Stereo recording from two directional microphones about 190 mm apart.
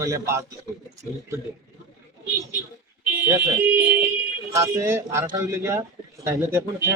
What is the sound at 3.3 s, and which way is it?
Speech, 15° right (ahead or behind).